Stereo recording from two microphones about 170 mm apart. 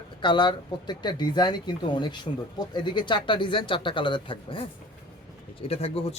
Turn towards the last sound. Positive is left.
turn(degrees=35)  # may be behind; listen again after turning